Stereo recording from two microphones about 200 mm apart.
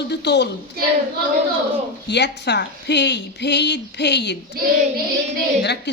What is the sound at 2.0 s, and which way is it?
Speech, 60° left (ahead or behind).